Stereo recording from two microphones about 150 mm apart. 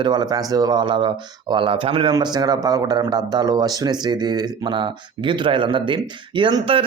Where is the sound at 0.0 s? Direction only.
25° right (ahead or behind).